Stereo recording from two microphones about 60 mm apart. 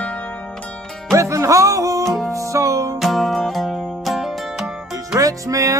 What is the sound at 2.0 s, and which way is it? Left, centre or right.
Music, centre.